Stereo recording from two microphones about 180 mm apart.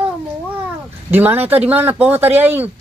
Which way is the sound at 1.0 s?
10° right (ahead or behind).